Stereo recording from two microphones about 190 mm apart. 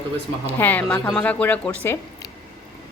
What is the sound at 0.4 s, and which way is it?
A woman's voice, 10° left (ahead or behind).